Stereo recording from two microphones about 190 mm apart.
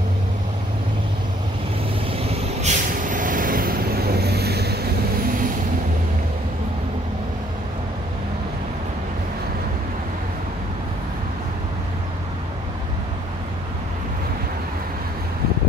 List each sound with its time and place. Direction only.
2.1 s vehicle: 35° right (ahead or behind); by 4.7 s 55° right (ahead or behind)